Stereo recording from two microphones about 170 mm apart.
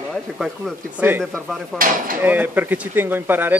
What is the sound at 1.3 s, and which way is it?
Speech, centre (ahead or behind).